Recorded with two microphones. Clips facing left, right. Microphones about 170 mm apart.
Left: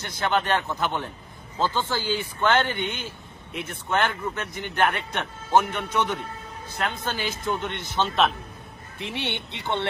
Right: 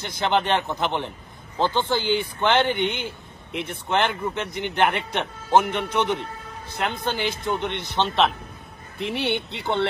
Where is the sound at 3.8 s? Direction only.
20° right (ahead or behind).